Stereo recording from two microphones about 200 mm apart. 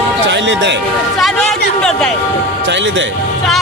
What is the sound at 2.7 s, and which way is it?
Speech, 65° right (ahead or behind).